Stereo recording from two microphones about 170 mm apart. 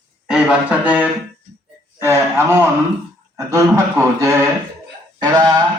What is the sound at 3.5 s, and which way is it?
A man's voice, 15° right (ahead or behind).